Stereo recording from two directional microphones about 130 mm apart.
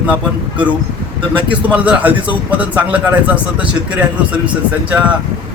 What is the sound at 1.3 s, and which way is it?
A man's voice, 10° right (ahead or behind).